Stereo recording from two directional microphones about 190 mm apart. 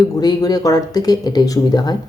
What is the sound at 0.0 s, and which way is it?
Speech, 20° left (ahead or behind).